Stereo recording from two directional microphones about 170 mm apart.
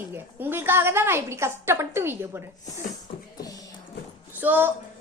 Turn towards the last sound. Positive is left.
turn(degrees=-10)  # may be behind; listen again after turning